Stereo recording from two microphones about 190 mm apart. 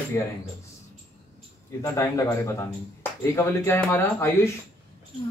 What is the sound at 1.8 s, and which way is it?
Speech, 15° left (ahead or behind).